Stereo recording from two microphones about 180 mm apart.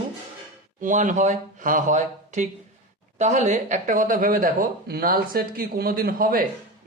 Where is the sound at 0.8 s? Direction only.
45° right (ahead or behind).